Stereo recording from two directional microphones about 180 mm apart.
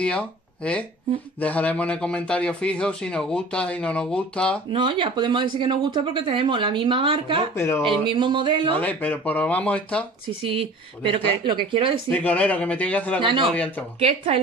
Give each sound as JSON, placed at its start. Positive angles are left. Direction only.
{"t": 0.0, "sound": "a man's voice", "side_deg": 5}
{"t": 4.7, "sound": "speech", "side_deg": -25}
{"t": 7.5, "sound": "speech", "side_deg": 15}
{"t": 8.0, "sound": "speech", "side_deg": -25}
{"t": 8.7, "sound": "speech", "side_deg": 10}
{"t": 10.4, "sound": "speech", "side_deg": -30}
{"t": 12.1, "sound": "speech", "side_deg": 10}
{"t": 13.2, "sound": "a woman's voice", "side_deg": -30}